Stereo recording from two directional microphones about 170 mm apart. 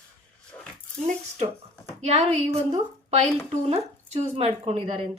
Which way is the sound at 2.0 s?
40° right (ahead or behind).